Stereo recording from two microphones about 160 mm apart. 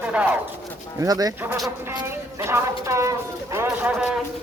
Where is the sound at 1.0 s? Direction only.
25° right (ahead or behind).